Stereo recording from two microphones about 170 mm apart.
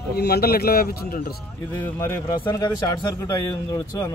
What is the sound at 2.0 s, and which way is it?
A man's voice, 15° left (ahead or behind).